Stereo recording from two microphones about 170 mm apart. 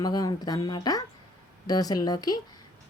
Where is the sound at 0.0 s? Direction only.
20° left (ahead or behind).